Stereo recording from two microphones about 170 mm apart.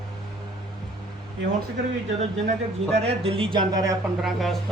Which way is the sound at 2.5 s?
40° right (ahead or behind).